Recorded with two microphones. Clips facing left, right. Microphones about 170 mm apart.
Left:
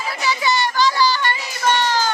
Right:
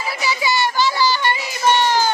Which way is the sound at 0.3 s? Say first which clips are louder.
Even; 10° right (ahead or behind).